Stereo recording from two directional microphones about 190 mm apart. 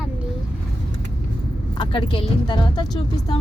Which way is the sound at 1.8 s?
25° left (ahead or behind).